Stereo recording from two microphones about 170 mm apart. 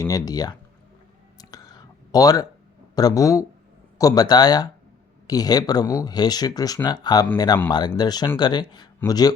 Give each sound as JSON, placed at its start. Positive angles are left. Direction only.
{"t": 0.0, "sound": "speech", "side_deg": 20}
{"t": 1.4, "sound": "whispering", "side_deg": 20}
{"t": 2.9, "sound": "speech", "side_deg": 20}